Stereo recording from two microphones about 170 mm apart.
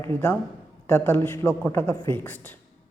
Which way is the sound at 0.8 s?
15° left (ahead or behind).